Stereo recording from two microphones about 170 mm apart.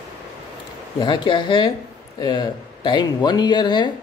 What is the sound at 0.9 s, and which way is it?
Speech, 30° left (ahead or behind).